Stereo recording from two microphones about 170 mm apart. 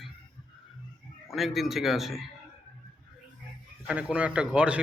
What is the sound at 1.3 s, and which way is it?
Speech, centre (ahead or behind).